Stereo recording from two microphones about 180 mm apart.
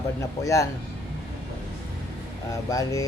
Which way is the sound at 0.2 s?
15° left (ahead or behind).